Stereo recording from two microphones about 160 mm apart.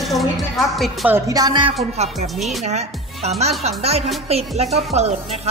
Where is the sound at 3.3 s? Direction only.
40° right (ahead or behind).